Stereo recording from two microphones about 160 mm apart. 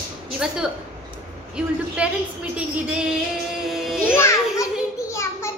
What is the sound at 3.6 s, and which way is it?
Music, centre (ahead or behind).